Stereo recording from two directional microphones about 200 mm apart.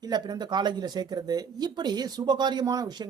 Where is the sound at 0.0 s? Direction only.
20° right (ahead or behind).